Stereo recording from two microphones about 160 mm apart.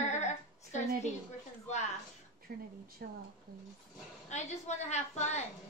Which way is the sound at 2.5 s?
70° right (ahead or behind).